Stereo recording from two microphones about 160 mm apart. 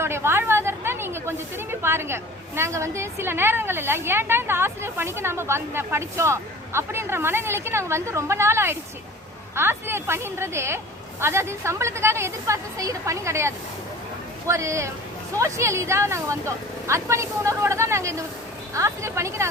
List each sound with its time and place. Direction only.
0.0 s a woman's voice: 15° right (ahead or behind)